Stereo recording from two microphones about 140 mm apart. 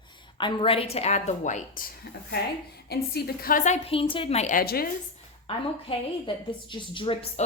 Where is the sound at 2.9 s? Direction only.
90° left; by 3.8 s 70° left (ahead or behind).